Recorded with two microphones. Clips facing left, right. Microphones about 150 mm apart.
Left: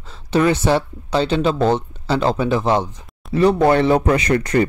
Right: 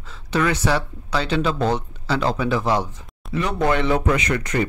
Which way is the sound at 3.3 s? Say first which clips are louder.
Left 7 dB; 35° left (ahead or behind).